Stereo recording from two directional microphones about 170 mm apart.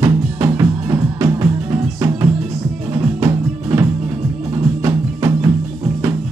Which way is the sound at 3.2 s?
20° right (ahead or behind).